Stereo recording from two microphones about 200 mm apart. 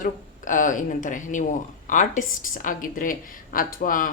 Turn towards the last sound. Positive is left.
turn(degrees=40)  # may be behind; listen again after turning